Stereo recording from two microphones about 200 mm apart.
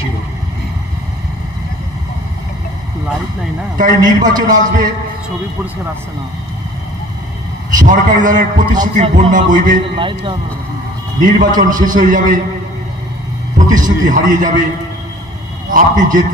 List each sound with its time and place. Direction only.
3.7 s a man's voice: 40° right (ahead or behind)
7.8 s a man's voice: 40° right (ahead or behind)
9.9 s speech: 25° right (ahead or behind)
11.1 s a man's voice: 40° right (ahead or behind)
13.7 s a man's voice: 40° right (ahead or behind)
15.7 s a man's voice: 40° right (ahead or behind)